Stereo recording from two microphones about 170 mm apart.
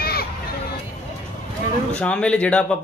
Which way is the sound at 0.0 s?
65° left (ahead or behind).